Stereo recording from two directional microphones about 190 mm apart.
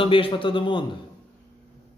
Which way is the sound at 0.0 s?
30° left (ahead or behind).